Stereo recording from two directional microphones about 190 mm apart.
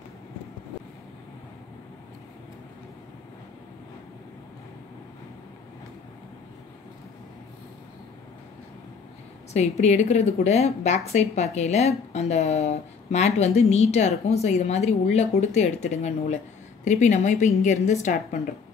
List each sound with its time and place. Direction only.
9.5 s speech: 35° left (ahead or behind)